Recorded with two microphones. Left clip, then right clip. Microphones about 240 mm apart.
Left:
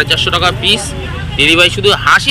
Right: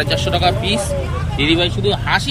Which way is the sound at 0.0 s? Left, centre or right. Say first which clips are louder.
Left 5 dB; centre.